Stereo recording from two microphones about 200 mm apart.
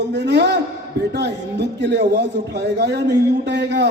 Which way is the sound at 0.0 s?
60° right (ahead or behind).